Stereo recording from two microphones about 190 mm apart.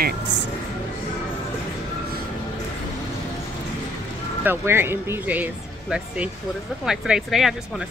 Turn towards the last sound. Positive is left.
turn(degrees=0)  # may be behind; listen again after turning